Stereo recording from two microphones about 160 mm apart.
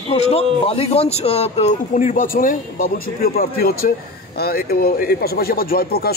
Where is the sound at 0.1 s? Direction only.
40° left (ahead or behind).